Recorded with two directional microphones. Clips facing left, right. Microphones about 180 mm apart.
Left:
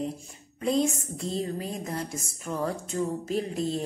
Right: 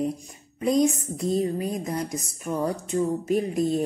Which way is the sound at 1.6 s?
15° right (ahead or behind).